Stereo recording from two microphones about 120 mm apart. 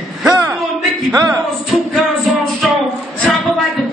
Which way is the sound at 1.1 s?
25° right (ahead or behind).